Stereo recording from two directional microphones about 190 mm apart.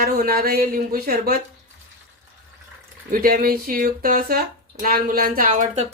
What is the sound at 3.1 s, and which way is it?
Speech, 50° right (ahead or behind).